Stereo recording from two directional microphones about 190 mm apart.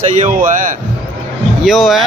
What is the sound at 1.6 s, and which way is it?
Speech, centre (ahead or behind).